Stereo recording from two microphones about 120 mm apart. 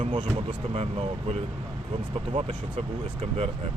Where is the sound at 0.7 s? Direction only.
55° right (ahead or behind).